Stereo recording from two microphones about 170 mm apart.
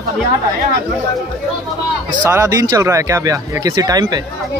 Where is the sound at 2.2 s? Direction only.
15° right (ahead or behind).